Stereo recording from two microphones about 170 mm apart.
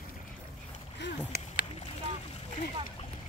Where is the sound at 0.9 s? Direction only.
90° left.